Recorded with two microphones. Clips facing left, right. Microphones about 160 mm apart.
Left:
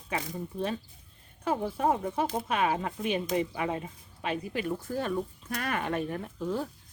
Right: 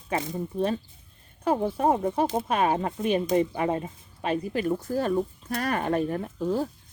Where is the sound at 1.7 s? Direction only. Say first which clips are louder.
Right 4 dB; 40° right (ahead or behind).